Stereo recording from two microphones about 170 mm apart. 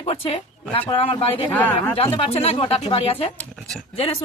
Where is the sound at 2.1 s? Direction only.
35° left (ahead or behind).